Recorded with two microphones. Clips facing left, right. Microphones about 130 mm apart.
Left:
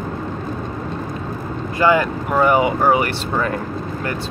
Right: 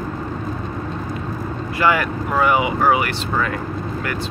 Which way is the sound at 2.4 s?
40° left (ahead or behind).